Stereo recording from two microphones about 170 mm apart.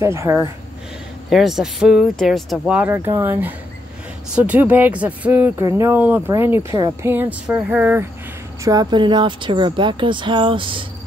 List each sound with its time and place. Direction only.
0.0 s speech: 15° right (ahead or behind)
1.3 s speech: centre (ahead or behind)
8.6 s speech: 25° right (ahead or behind)